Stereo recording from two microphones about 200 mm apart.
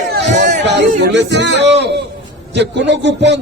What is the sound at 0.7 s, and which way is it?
A man's voice, 60° right (ahead or behind).